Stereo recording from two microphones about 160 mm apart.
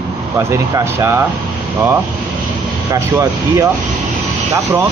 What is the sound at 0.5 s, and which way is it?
Speech, 15° right (ahead or behind).